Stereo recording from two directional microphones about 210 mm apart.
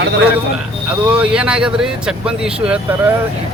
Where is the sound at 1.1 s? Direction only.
5° right (ahead or behind).